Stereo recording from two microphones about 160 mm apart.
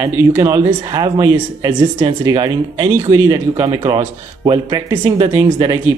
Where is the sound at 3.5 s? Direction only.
35° right (ahead or behind).